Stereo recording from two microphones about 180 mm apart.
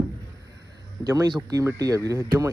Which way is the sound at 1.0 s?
20° right (ahead or behind).